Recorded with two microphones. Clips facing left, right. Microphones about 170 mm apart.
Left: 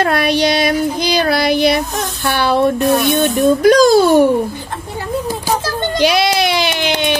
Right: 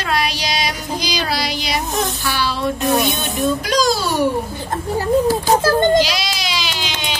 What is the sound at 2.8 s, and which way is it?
Speech, 20° right (ahead or behind).